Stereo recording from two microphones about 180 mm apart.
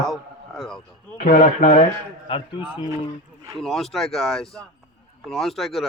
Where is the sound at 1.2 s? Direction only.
50° left (ahead or behind).